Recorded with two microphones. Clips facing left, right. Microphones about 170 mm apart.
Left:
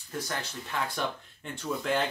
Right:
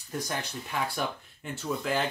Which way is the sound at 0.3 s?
15° right (ahead or behind).